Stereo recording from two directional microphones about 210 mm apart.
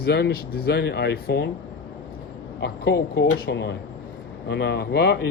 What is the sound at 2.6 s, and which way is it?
Speech, 50° left (ahead or behind).